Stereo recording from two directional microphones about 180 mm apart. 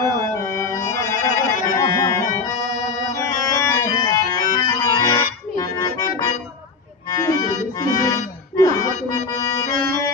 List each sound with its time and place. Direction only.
0.0 s music: 15° left (ahead or behind)
3.1 s organ: 20° left (ahead or behind)
7.1 s accordion: 20° left (ahead or behind)